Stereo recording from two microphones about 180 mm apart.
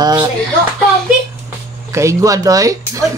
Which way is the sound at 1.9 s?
15° right (ahead or behind).